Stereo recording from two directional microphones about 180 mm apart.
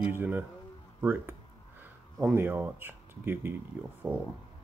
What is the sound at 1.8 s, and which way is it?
Speech, 10° right (ahead or behind).